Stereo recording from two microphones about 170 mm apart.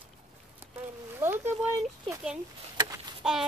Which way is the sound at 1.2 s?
15° right (ahead or behind).